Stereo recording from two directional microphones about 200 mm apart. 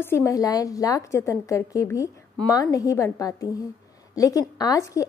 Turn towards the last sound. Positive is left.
turn(degrees=15)  # may be behind; listen again after turning